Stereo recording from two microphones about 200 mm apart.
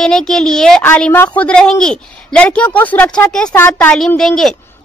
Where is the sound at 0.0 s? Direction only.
5° left (ahead or behind).